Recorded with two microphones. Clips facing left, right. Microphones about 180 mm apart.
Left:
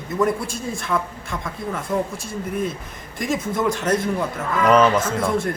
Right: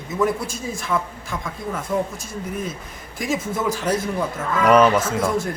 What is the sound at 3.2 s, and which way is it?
Speech, 5° right (ahead or behind).